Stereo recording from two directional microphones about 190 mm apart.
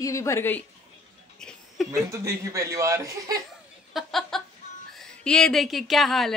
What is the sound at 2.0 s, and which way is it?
A man's voice, 15° right (ahead or behind).